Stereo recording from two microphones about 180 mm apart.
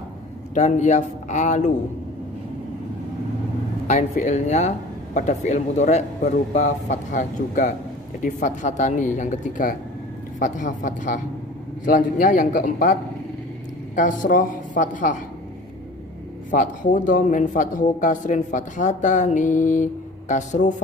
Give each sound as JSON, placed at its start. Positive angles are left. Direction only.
{"t": 0.6, "sound": "speech", "side_deg": 40}
{"t": 3.8, "sound": "speech", "side_deg": 40}
{"t": 16.4, "sound": "speech", "side_deg": 45}